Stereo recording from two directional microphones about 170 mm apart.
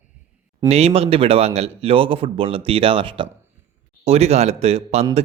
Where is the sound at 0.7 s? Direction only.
35° right (ahead or behind).